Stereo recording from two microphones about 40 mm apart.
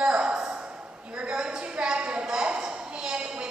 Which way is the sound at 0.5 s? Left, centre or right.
Right.